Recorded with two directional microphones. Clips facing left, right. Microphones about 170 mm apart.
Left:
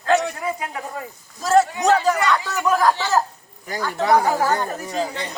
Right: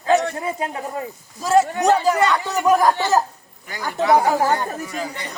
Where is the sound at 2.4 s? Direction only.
15° right (ahead or behind).